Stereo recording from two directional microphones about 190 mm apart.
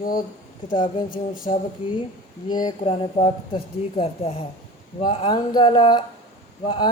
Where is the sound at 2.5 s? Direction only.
25° left (ahead or behind).